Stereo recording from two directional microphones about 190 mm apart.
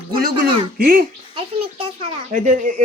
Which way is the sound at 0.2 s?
50° right (ahead or behind).